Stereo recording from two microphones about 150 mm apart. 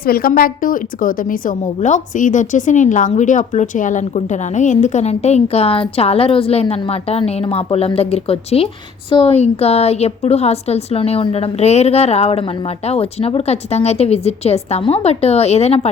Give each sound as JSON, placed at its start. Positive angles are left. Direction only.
{"t": 0.0, "sound": "a woman's voice", "side_deg": 80}